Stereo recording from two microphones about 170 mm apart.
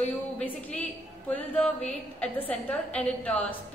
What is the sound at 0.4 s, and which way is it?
A woman's voice, 5° left (ahead or behind).